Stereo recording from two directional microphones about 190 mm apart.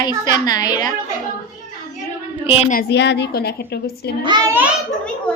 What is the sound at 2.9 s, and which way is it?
A woman's voice, 65° left (ahead or behind).